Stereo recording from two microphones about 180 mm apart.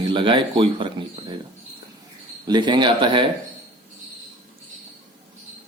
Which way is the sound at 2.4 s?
25° right (ahead or behind).